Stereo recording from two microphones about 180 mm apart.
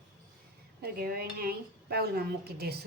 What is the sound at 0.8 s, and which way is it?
A woman's voice, 60° right (ahead or behind).